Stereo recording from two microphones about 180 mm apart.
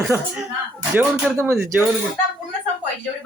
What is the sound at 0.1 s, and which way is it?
Speech, 10° right (ahead or behind).